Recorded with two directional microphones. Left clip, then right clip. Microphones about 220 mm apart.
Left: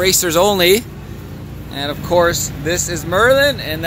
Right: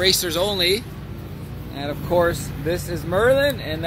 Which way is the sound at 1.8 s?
10° left (ahead or behind).